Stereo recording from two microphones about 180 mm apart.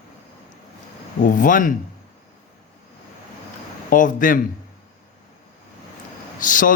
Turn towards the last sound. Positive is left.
turn(degrees=50)  # may be behind; listen again after turning